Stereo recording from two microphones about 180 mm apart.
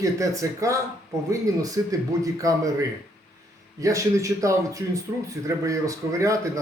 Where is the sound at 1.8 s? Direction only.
15° right (ahead or behind).